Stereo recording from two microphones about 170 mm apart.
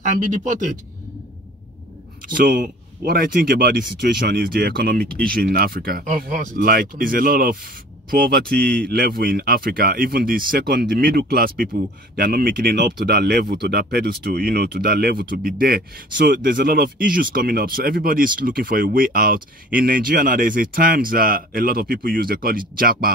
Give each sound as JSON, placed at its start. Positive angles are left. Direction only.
{"t": 0.0, "sound": "speech", "side_deg": -45}
{"t": 2.2, "sound": "speech", "side_deg": -55}